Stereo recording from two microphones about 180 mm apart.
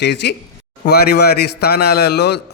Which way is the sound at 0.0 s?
70° left (ahead or behind).